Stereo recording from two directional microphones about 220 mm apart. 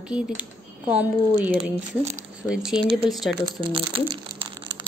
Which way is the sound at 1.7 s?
30° right (ahead or behind).